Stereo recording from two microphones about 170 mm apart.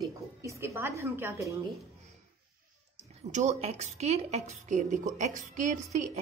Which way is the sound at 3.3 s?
45° right (ahead or behind).